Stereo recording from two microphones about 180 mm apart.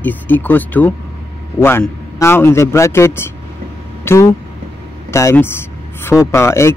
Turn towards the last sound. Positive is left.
turn(degrees=15)  # may be behind; listen again after turning